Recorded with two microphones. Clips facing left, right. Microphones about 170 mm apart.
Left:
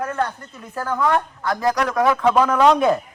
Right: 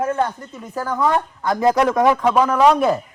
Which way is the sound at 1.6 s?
25° right (ahead or behind).